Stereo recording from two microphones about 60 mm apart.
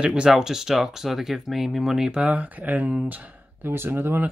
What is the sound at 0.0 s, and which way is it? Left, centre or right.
Speech, centre.